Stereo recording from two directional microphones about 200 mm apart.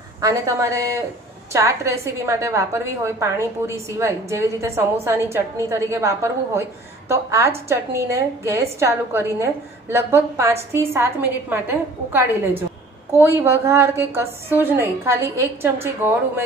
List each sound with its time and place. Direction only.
0.2 s a woman's voice: 15° right (ahead or behind)